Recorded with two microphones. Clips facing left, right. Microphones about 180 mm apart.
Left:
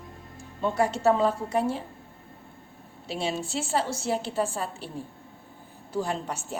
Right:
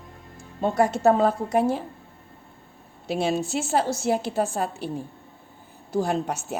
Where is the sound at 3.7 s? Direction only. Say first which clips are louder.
Right 4 dB; 50° right (ahead or behind).